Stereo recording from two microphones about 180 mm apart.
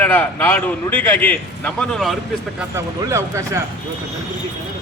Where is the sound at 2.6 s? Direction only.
15° right (ahead or behind).